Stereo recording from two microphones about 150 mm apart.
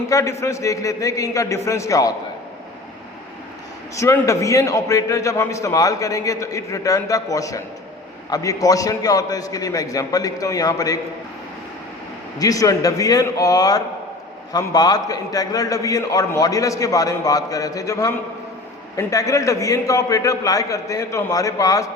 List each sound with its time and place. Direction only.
0.1 s a man's voice: 20° left (ahead or behind)
3.9 s a man's voice: 20° left (ahead or behind)
12.4 s a man's voice: 25° left (ahead or behind)